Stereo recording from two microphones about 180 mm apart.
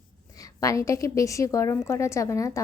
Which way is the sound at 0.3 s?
20° left (ahead or behind).